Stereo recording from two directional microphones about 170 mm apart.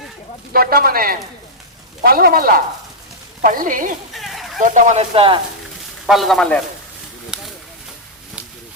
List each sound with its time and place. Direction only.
0.5 s a woman's voice: 60° right (ahead or behind)
4.1 s a sound: centre (ahead or behind)
4.6 s a woman's voice: 45° right (ahead or behind)
5.1 s speech: 30° right (ahead or behind)
6.1 s speech: centre (ahead or behind)